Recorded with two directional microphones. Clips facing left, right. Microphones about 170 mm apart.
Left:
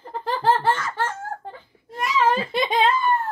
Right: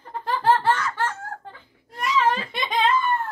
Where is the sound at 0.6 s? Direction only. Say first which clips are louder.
Even; 25° left (ahead or behind).